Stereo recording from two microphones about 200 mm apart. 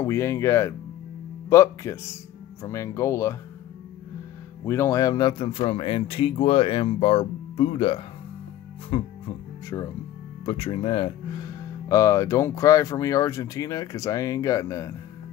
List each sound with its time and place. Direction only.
0.0 s speech: 10° left (ahead or behind)
4.6 s speech: 15° left (ahead or behind)